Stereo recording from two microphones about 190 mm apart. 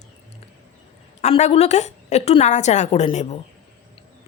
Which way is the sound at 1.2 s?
35° left (ahead or behind).